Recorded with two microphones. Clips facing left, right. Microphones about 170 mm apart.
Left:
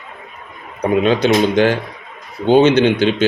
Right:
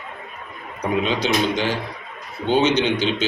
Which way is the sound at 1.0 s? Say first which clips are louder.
Left 8 dB; 55° left (ahead or behind).